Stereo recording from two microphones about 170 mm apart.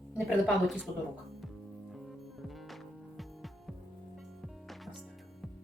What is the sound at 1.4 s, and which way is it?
Music, centre (ahead or behind).